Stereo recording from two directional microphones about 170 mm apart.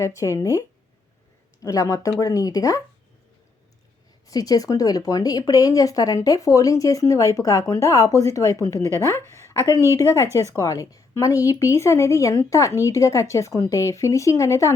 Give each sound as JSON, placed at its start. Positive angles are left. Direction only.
{"t": 0.0, "sound": "a woman's voice", "side_deg": 20}
{"t": 1.6, "sound": "speech", "side_deg": 20}
{"t": 4.3, "sound": "a woman's voice", "side_deg": 20}